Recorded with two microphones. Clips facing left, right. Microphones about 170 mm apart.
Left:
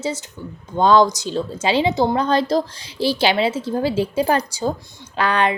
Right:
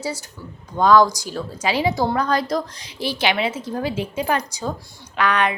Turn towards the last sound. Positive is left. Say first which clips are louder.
# left 1 dB
turn(degrees=30)  # may be behind; listen again after turning